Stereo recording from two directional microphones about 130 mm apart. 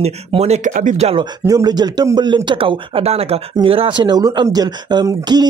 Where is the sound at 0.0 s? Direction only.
55° right (ahead or behind).